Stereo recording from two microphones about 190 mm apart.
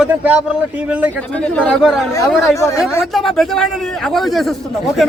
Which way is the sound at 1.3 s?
5° left (ahead or behind).